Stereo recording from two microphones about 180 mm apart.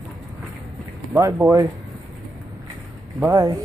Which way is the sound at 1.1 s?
10° right (ahead or behind).